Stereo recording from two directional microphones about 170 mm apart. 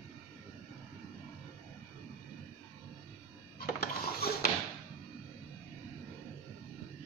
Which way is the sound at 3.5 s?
65° left (ahead or behind).